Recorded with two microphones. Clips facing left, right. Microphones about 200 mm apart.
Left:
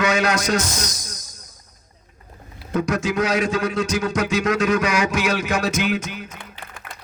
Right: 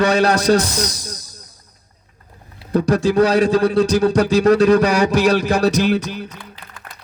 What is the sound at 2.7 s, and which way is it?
Speech, 35° right (ahead or behind).